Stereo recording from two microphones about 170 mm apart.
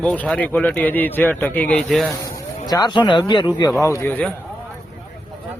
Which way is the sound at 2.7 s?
25° left (ahead or behind).